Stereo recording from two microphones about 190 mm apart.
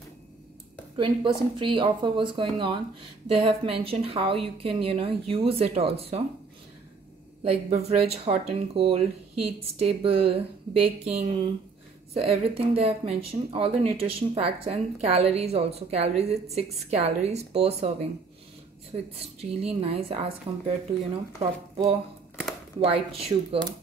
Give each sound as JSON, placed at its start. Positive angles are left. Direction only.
{"t": 0.9, "sound": "a woman's voice", "side_deg": -25}
{"t": 7.4, "sound": "speech", "side_deg": -35}
{"t": 19.1, "sound": "speech", "side_deg": -30}